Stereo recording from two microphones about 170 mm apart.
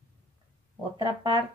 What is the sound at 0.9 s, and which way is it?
Speech, 25° right (ahead or behind).